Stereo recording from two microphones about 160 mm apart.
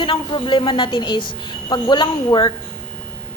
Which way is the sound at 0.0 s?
30° left (ahead or behind).